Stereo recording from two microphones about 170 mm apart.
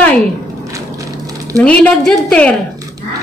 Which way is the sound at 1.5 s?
10° left (ahead or behind).